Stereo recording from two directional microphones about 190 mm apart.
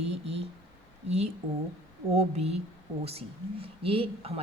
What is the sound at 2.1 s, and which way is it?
Speech, 35° right (ahead or behind).